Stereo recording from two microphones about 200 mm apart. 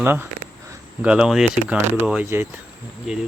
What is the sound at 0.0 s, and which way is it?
Speech, 10° right (ahead or behind).